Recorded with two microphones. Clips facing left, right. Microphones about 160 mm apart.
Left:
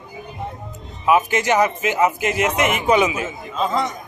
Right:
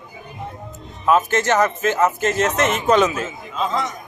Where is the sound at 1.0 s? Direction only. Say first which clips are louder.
Even; 10° left (ahead or behind).